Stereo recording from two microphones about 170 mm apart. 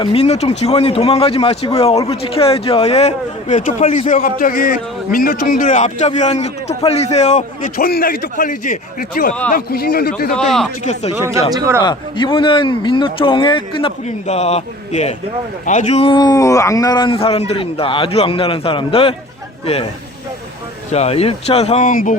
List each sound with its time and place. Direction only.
0.0 s speech: 35° left (ahead or behind)
4.1 s a man's voice: 55° left (ahead or behind)
10.3 s speech: 5° left (ahead or behind)
11.5 s a man's voice: 20° right (ahead or behind)
11.8 s speech: 25° left (ahead or behind)
20.9 s speech: 40° left (ahead or behind)